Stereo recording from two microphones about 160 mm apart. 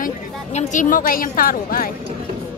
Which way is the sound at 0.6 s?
50° left (ahead or behind).